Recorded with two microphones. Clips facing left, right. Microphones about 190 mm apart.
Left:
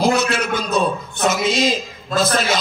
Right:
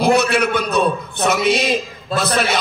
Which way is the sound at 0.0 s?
60° right (ahead or behind).